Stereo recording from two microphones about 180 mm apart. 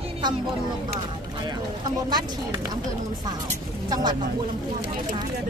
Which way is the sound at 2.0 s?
25° right (ahead or behind).